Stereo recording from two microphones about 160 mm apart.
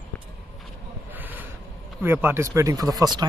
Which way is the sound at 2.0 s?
15° right (ahead or behind).